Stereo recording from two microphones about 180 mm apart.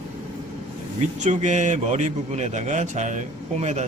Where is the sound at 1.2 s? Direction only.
40° right (ahead or behind).